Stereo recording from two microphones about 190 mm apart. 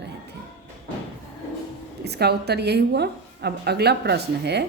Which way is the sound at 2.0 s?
60° right (ahead or behind).